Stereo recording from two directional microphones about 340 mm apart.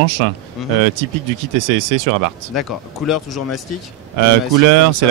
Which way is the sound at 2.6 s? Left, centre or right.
Centre.